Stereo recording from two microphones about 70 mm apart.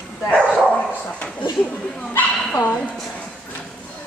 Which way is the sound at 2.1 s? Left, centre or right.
Left.